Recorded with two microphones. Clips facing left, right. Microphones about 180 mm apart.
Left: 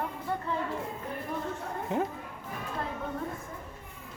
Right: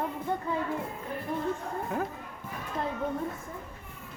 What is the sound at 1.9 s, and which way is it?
Speech, 25° left (ahead or behind).